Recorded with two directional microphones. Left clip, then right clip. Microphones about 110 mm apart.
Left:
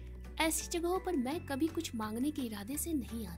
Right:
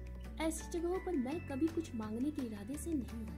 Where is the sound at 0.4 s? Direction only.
20° left (ahead or behind).